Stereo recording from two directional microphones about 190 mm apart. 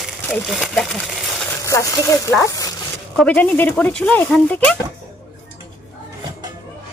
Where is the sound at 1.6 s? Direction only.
15° left (ahead or behind).